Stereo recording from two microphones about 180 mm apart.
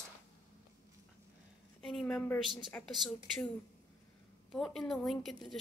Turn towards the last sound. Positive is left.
turn(degrees=0)  # may be behind; listen again after turning